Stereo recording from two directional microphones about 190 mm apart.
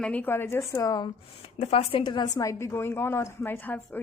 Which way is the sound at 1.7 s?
30° left (ahead or behind).